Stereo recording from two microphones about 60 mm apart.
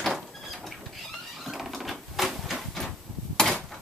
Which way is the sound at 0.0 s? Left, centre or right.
Centre.